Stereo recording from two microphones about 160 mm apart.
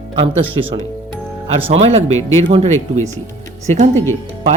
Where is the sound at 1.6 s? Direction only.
40° right (ahead or behind).